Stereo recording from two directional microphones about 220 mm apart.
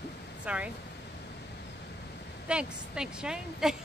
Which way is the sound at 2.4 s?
5° right (ahead or behind).